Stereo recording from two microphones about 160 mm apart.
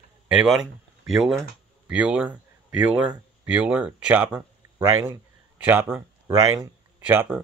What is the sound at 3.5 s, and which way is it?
Speech, 10° right (ahead or behind).